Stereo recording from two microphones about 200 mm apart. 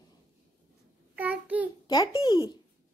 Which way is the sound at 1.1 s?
10° right (ahead or behind).